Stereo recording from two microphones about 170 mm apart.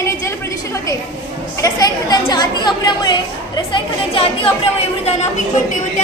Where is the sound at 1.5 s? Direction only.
20° left (ahead or behind).